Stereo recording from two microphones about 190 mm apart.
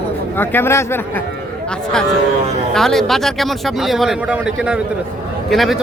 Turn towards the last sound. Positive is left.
turn(degrees=0)  # may be behind; listen again after turning